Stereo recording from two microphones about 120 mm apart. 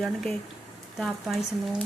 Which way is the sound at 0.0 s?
5° left (ahead or behind).